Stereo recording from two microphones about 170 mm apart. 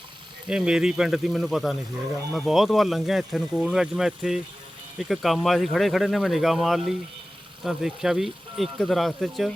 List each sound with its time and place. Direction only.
0.4 s speech: 5° right (ahead or behind)